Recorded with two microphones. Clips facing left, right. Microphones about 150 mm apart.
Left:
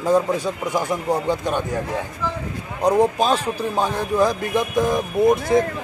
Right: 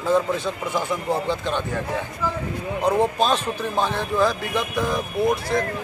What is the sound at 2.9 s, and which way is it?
Speech, 15° left (ahead or behind).